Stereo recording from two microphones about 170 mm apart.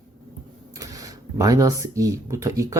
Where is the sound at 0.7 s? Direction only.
20° right (ahead or behind).